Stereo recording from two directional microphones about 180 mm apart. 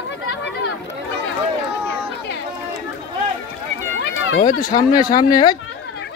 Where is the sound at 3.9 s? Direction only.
90° left.